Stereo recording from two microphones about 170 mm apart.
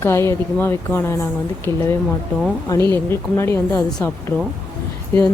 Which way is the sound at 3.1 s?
15° left (ahead or behind).